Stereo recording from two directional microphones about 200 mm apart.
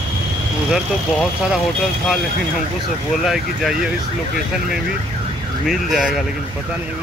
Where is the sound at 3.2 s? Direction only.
Centre (ahead or behind).